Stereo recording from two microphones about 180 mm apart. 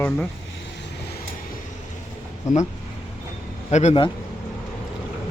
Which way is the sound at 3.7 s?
40° left (ahead or behind).